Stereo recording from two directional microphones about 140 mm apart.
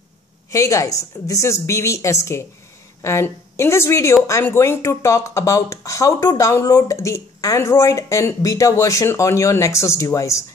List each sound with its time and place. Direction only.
0.5 s speech: 25° left (ahead or behind)